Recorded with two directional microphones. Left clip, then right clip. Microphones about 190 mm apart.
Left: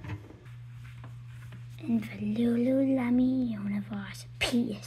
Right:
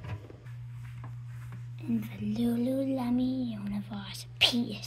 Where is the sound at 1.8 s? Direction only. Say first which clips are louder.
Left 2 dB; 35° left (ahead or behind).